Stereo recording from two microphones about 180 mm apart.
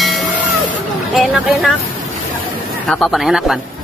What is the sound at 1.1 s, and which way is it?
Speech, centre (ahead or behind).